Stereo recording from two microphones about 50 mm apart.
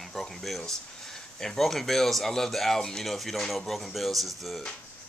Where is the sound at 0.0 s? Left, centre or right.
Centre.